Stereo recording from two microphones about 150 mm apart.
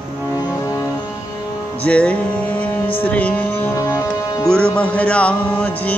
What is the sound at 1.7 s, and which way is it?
Music, 10° left (ahead or behind).